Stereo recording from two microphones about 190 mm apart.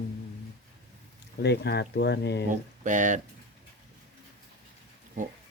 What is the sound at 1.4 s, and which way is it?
Speech, 60° left (ahead or behind).